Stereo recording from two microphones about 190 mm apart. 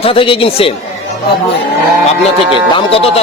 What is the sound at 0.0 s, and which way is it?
Speech, 30° left (ahead or behind).